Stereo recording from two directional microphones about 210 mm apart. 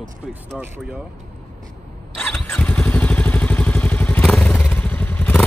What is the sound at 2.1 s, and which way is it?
Motorcycle, centre (ahead or behind).